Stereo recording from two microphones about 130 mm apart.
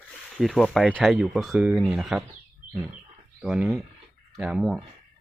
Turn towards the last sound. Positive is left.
turn(degrees=-5)  # may be behind; listen again after turning